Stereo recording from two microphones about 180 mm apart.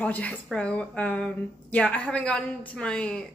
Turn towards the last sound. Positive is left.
turn(degrees=5)  # may be behind; listen again after turning